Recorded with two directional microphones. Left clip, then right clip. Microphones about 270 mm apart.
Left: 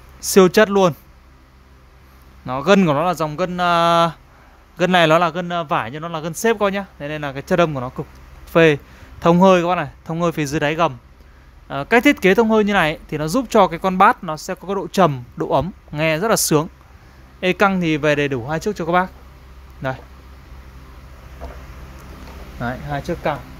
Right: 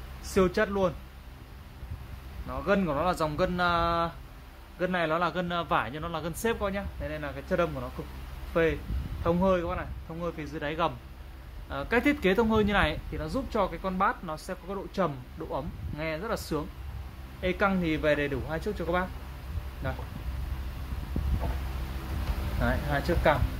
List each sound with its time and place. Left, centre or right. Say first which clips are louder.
0.3 s speech: left 14 dB; left
2.4 s speech: left 13 dB; left
22.6 s speech: left 4 dB; left